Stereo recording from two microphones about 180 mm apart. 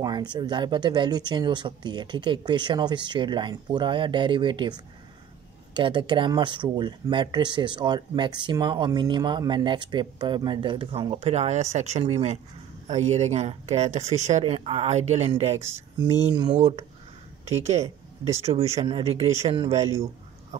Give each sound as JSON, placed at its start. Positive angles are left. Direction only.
{"t": 0.0, "sound": "speech", "side_deg": -25}
{"t": 5.8, "sound": "speech", "side_deg": -25}
{"t": 15.6, "sound": "speech", "side_deg": -15}
{"t": 16.1, "sound": "speech", "side_deg": -35}